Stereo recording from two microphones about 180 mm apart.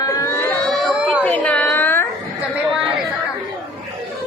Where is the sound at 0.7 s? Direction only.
10° left (ahead or behind).